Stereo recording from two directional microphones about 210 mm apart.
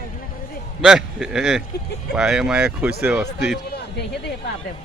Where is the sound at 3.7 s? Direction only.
55° left (ahead or behind).